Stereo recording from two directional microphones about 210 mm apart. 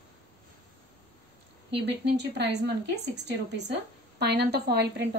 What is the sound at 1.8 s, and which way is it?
Speech, 55° right (ahead or behind).